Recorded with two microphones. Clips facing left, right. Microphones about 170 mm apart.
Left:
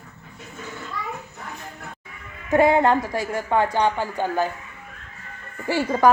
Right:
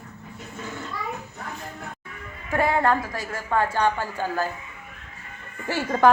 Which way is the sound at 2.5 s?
25° left (ahead or behind).